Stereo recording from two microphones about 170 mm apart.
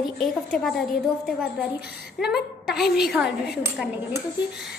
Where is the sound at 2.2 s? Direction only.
Centre (ahead or behind).